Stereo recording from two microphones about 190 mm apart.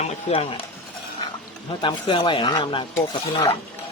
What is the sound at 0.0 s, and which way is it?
Speech, 30° left (ahead or behind).